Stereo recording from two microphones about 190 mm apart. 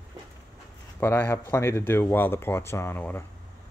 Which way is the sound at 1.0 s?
10° left (ahead or behind).